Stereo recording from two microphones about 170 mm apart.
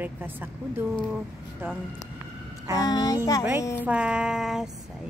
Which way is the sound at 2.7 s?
20° left (ahead or behind).